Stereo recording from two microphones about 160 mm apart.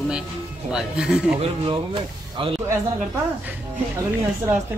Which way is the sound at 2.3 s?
35° right (ahead or behind).